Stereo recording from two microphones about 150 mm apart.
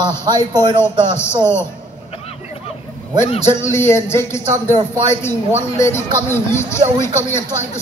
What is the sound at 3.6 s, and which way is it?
A man's voice, 15° left (ahead or behind).